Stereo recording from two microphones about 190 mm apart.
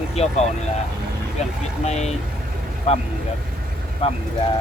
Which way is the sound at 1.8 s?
35° left (ahead or behind).